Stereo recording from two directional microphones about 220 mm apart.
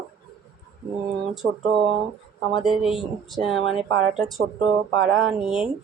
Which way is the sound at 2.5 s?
Centre (ahead or behind).